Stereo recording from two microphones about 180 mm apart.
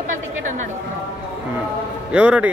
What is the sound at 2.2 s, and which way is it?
Speech, 5° right (ahead or behind).